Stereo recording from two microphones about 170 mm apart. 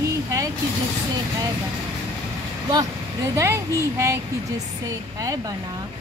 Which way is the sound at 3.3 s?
15° right (ahead or behind).